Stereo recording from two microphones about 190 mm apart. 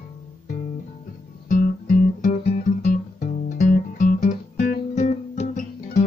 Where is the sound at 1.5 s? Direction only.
45° left (ahead or behind).